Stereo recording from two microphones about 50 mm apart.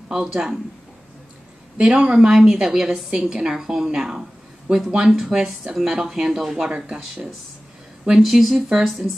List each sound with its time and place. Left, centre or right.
0.1 s speech: centre
1.8 s speech: right
8.2 s speech: centre